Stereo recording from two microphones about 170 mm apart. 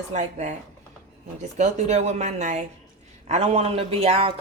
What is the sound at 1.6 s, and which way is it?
Speech, 45° right (ahead or behind).